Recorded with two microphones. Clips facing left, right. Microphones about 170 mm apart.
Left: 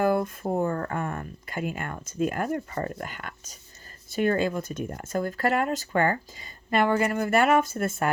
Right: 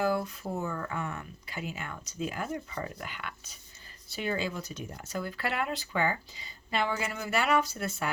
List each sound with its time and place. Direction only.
0.0 s speech: 55° left (ahead or behind)